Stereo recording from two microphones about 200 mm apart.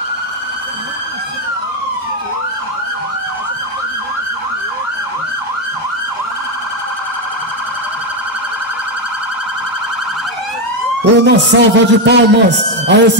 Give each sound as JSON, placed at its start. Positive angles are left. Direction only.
{"t": 11.2, "sound": "a man's voice", "side_deg": -60}